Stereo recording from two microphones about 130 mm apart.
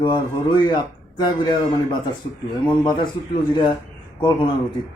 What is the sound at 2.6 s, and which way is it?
Speech, 35° left (ahead or behind).